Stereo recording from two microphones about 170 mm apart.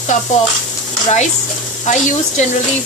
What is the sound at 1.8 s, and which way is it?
Speech, 45° left (ahead or behind).